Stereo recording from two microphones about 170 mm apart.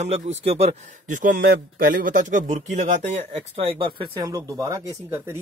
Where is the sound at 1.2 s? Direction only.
65° right (ahead or behind).